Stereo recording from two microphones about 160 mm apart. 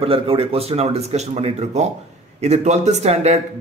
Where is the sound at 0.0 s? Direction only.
35° right (ahead or behind).